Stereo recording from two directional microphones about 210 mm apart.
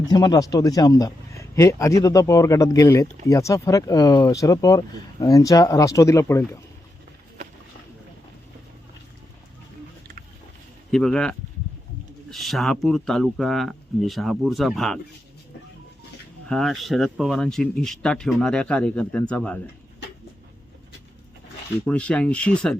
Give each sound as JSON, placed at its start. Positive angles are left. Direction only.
{"t": 0.1, "sound": "speech", "side_deg": 20}
{"t": 10.9, "sound": "speech", "side_deg": 5}
{"t": 16.5, "sound": "speech", "side_deg": 0}
{"t": 21.8, "sound": "speech", "side_deg": 5}